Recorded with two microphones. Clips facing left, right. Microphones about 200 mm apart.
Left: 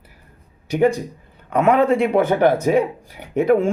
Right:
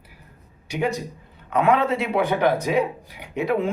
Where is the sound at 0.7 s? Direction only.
55° left (ahead or behind).